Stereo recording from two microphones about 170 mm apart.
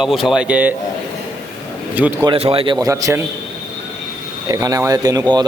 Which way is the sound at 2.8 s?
20° right (ahead or behind).